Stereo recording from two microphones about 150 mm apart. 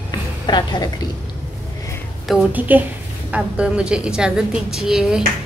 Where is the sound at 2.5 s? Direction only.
10° right (ahead or behind).